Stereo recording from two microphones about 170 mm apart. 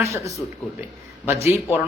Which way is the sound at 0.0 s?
15° right (ahead or behind).